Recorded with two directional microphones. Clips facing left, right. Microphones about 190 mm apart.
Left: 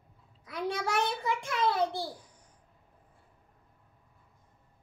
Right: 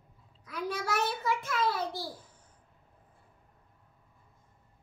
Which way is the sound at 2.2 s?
15° left (ahead or behind).